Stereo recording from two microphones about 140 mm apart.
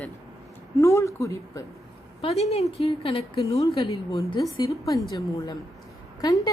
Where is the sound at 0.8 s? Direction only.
20° left (ahead or behind).